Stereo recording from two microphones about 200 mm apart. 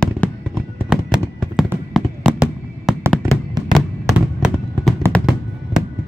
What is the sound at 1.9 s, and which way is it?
Fireworks, centre (ahead or behind).